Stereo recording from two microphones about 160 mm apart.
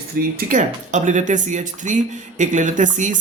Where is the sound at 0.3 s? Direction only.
55° right (ahead or behind).